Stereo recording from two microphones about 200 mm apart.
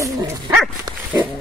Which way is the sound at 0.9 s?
20° right (ahead or behind).